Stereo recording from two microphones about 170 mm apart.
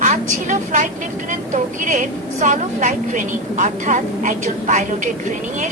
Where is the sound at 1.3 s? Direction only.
50° right (ahead or behind).